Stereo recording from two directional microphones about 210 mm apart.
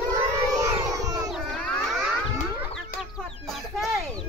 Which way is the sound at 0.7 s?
15° right (ahead or behind).